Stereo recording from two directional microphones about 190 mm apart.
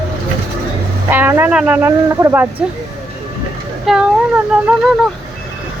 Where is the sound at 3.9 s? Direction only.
Centre (ahead or behind).